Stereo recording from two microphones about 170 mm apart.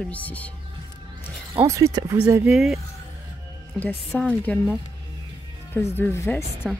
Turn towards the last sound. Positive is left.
turn(degrees=0)  # may be behind; listen again after turning